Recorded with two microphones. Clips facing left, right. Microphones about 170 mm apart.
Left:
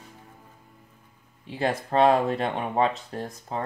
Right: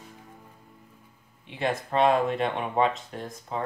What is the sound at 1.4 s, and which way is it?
Speech, 35° left (ahead or behind).